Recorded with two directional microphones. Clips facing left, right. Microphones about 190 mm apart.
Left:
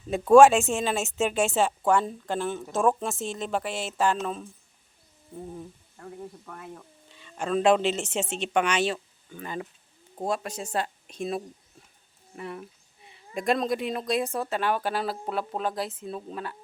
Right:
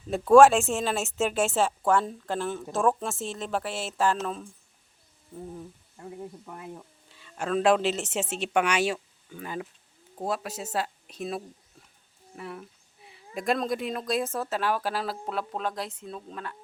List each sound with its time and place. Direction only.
0.1 s speech: centre (ahead or behind)
6.0 s speech: 15° right (ahead or behind)
7.1 s speech: 5° right (ahead or behind)